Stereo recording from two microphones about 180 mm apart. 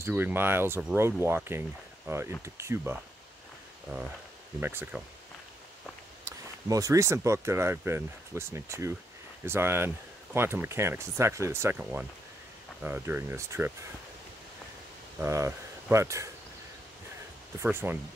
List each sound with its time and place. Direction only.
0.0 s speech: 10° right (ahead or behind)
6.2 s speech: 20° right (ahead or behind)
15.1 s speech: 15° right (ahead or behind)
17.6 s speech: 15° right (ahead or behind)